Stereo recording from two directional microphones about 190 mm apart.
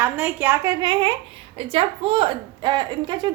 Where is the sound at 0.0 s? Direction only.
10° right (ahead or behind).